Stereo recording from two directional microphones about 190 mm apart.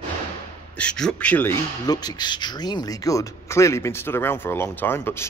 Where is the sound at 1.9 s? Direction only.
20° left (ahead or behind).